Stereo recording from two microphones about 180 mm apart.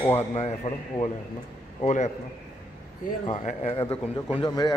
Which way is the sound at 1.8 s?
45° left (ahead or behind).